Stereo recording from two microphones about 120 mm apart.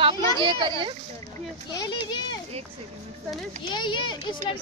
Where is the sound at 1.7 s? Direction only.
35° left (ahead or behind).